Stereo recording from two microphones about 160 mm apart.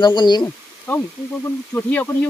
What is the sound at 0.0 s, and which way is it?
Speech, 25° left (ahead or behind).